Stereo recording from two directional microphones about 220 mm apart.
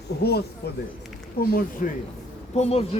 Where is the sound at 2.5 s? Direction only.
30° left (ahead or behind).